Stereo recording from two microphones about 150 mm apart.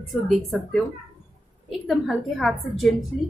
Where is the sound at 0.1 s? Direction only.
Centre (ahead or behind).